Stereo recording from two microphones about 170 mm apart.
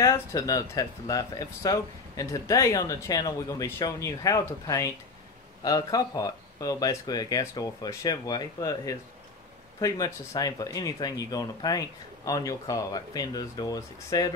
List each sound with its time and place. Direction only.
0.0 s speech: 20° left (ahead or behind)